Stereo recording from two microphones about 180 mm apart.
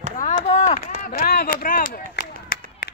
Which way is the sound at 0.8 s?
50° left (ahead or behind).